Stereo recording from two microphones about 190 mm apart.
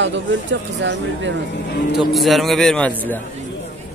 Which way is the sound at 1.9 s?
Centre (ahead or behind).